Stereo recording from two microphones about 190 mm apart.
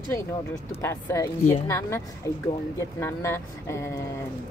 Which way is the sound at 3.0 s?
15° left (ahead or behind).